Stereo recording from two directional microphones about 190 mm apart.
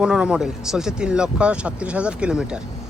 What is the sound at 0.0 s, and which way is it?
Speech, 5° right (ahead or behind).